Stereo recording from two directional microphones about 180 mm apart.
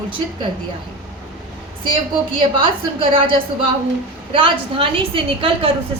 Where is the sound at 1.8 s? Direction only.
30° right (ahead or behind).